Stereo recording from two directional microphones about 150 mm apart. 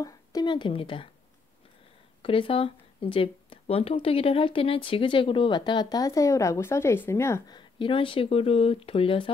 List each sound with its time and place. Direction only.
0.0 s speech: 25° left (ahead or behind)
2.2 s speech: 35° left (ahead or behind); by 7.5 s 20° left (ahead or behind)
7.5 s speech: 35° left (ahead or behind)